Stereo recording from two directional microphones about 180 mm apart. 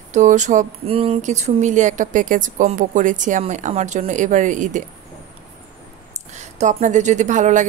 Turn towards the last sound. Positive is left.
turn(degrees=-45)  # may be behind; listen again after turning